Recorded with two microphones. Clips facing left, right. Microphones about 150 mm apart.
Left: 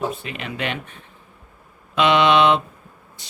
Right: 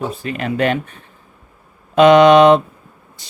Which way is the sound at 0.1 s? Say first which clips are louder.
Right 8 dB; 40° right (ahead or behind).